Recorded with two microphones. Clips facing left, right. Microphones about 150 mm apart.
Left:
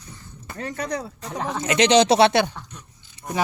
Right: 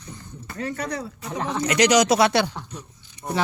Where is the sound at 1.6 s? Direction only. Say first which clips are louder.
Left 1 dB; 25° left (ahead or behind).